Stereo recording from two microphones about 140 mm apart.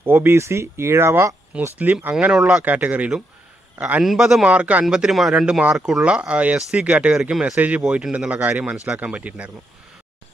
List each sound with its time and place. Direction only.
0.0 s a man's voice: 15° right (ahead or behind)